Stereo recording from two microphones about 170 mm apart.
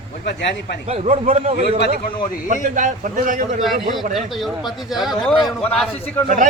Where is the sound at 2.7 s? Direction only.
50° right (ahead or behind).